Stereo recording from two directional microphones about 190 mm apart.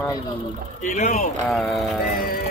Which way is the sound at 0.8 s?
40° left (ahead or behind).